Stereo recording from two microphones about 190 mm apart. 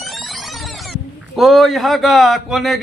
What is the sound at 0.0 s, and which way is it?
Speech, centre (ahead or behind).